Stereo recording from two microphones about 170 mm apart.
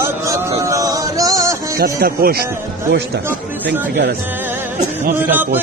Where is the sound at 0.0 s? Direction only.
15° right (ahead or behind).